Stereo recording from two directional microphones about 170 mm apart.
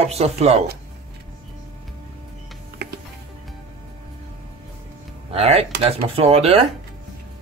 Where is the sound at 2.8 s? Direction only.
70° right (ahead or behind).